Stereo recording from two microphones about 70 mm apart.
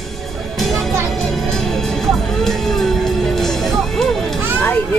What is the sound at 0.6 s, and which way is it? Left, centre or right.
Music, centre.